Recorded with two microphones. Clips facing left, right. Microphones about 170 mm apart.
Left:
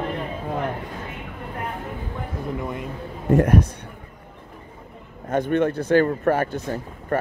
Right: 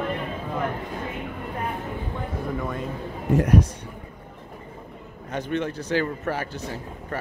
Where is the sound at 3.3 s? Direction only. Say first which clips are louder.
Left 2 dB; 55° left (ahead or behind).